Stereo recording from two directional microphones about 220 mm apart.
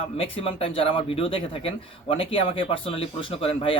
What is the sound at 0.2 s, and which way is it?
Speech, 25° left (ahead or behind).